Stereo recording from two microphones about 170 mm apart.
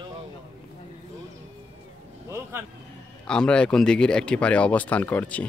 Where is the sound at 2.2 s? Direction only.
15° right (ahead or behind).